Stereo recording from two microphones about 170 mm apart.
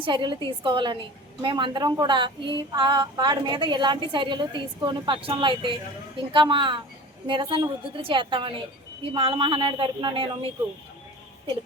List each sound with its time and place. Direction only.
0.0 s a woman's voice: 30° right (ahead or behind)